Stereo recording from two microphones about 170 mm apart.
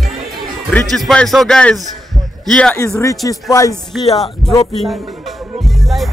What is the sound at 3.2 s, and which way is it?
Speech, 20° left (ahead or behind).